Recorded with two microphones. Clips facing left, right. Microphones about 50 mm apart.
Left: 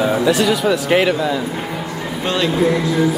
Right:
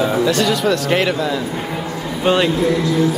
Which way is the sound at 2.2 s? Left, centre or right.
Centre.